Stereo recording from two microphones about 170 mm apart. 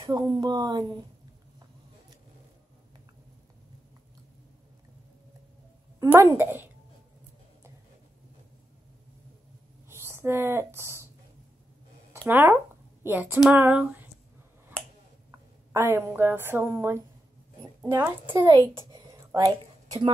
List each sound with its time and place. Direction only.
0.1 s speech: 25° right (ahead or behind)
5.9 s a woman's voice: 15° right (ahead or behind)
9.8 s speech: 15° right (ahead or behind)
12.3 s a woman's voice: 15° right (ahead or behind)
15.7 s a woman's voice: 15° right (ahead or behind)
18.5 s a sound: 25° right (ahead or behind)